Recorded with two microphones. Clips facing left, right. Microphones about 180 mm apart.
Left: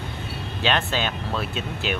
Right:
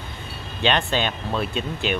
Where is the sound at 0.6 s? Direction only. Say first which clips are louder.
Right 2 dB; 5° left (ahead or behind).